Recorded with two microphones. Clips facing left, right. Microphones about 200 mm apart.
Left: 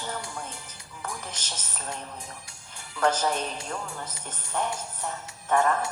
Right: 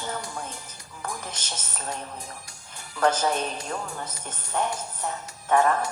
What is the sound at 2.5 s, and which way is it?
Speech, 40° right (ahead or behind).